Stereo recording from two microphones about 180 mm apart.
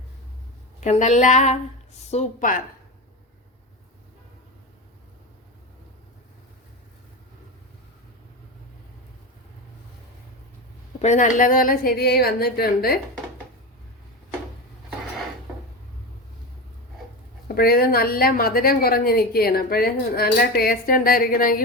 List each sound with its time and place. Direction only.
0.8 s a woman's voice: 40° left (ahead or behind)
11.0 s a woman's voice: 45° left (ahead or behind)
17.5 s a woman's voice: 55° left (ahead or behind)